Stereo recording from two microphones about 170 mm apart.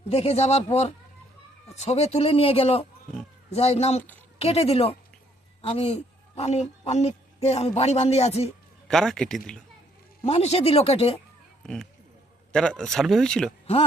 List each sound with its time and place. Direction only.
0.1 s a woman's voice: 35° left (ahead or behind)
8.9 s speech: centre (ahead or behind)
10.2 s speech: 35° left (ahead or behind)
11.6 s speech: centre (ahead or behind)